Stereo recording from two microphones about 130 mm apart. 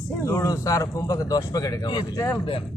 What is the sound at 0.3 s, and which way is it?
Speech, 25° left (ahead or behind).